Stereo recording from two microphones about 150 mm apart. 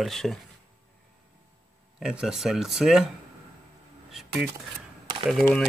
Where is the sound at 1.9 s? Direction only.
5° right (ahead or behind).